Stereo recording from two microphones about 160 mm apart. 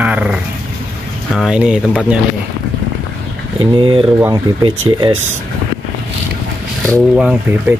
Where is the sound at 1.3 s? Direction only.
5° right (ahead or behind).